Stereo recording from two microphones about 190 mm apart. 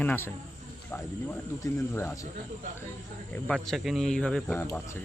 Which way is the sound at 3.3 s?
5° left (ahead or behind).